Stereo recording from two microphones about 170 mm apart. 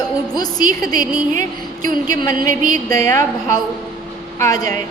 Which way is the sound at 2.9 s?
20° left (ahead or behind).